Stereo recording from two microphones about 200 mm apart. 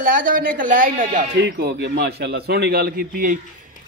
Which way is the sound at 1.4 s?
55° right (ahead or behind).